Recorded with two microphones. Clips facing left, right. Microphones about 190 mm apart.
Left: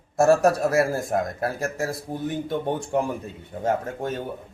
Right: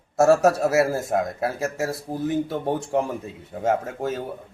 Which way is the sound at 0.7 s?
5° right (ahead or behind).